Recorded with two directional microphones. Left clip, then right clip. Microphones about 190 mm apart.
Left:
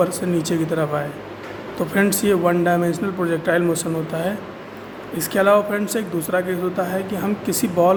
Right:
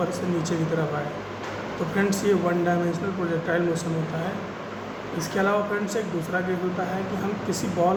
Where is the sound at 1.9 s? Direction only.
65° left (ahead or behind).